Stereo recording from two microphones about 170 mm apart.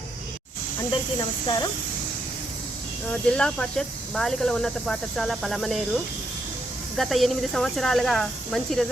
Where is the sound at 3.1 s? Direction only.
5° left (ahead or behind).